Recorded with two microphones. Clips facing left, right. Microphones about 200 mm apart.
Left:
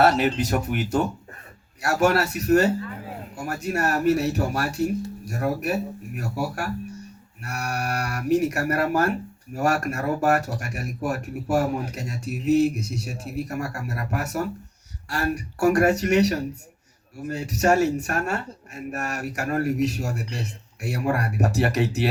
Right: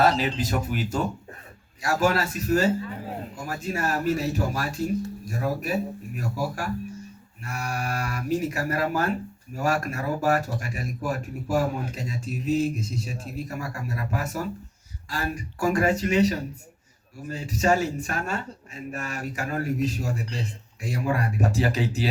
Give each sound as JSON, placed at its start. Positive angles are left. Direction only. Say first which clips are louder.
{"t": 0.3, "sound": "speech", "louder": "left 3 dB", "side_deg": 70}